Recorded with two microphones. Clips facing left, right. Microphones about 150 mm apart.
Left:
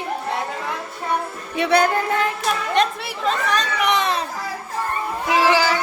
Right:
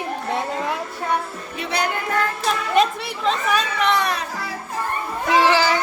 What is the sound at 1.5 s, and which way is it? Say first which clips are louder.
Music: left 10 dB; 80° left.